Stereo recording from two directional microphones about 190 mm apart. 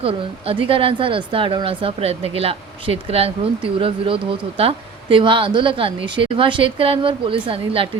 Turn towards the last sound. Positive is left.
turn(degrees=-30)  # may be behind; listen again after turning